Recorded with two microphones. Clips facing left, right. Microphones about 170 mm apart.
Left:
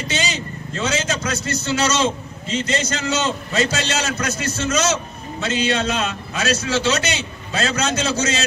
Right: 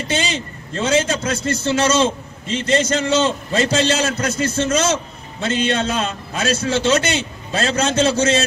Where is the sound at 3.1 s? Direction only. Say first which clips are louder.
Right 5 dB; 30° right (ahead or behind).